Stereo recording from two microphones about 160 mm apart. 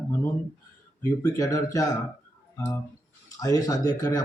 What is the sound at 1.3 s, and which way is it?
A man's voice, 20° left (ahead or behind).